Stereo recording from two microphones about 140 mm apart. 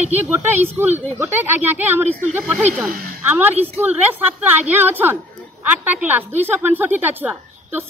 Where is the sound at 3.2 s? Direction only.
15° right (ahead or behind).